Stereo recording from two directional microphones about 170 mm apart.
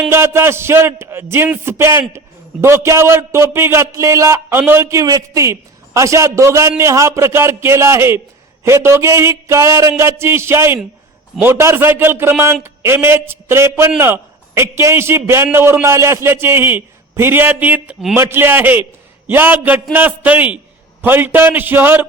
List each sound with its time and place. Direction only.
0.1 s a man's voice: 15° right (ahead or behind)